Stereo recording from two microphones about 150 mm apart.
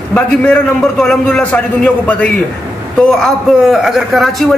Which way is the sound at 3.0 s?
5° left (ahead or behind).